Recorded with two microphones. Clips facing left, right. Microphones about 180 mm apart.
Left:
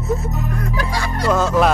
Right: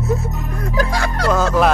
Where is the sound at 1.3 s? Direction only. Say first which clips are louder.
Even; centre (ahead or behind).